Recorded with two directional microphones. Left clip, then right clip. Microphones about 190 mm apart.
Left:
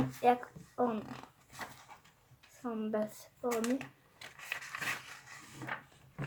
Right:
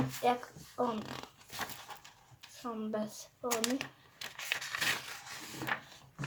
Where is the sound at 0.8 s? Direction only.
30° left (ahead or behind).